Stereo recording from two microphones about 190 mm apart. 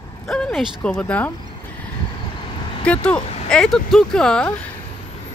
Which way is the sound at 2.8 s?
5° left (ahead or behind).